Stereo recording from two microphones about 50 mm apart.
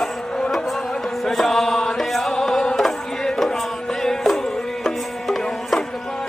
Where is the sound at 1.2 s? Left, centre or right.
Centre.